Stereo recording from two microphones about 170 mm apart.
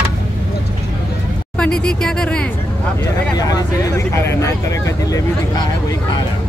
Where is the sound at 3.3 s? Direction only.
20° left (ahead or behind).